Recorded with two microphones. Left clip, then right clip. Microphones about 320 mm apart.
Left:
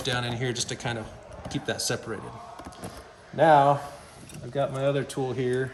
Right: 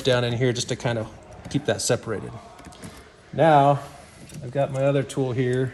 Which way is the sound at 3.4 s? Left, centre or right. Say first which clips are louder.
Right 2 dB; centre.